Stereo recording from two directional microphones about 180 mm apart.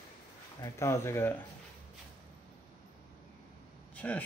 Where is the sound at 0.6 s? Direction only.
15° left (ahead or behind).